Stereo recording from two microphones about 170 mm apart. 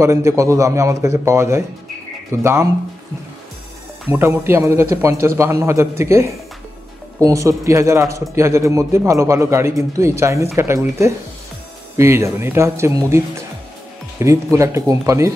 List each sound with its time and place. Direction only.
0.0 s a man's voice: 15° right (ahead or behind)
4.1 s a man's voice: 15° right (ahead or behind)
14.2 s a man's voice: 15° right (ahead or behind)